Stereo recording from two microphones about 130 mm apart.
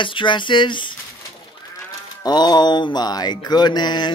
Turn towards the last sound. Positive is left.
turn(degrees=35)  # may be behind; listen again after turning